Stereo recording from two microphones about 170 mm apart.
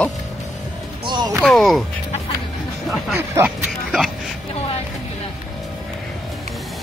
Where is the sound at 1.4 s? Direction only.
Centre (ahead or behind).